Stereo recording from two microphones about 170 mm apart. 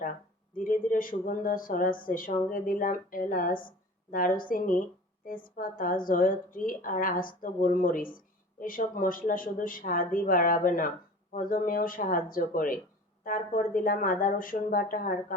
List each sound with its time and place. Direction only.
0.5 s a woman's voice: 55° left (ahead or behind)